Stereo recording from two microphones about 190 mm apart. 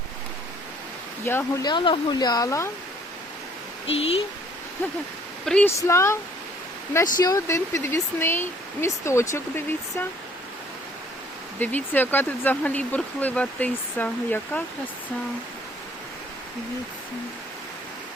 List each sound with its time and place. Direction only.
1.2 s speech: 10° left (ahead or behind)
1.6 s speech: 25° left (ahead or behind)
3.8 s speech: 30° left (ahead or behind)
5.5 s speech: 10° left (ahead or behind)
11.6 s speech: 10° left (ahead or behind)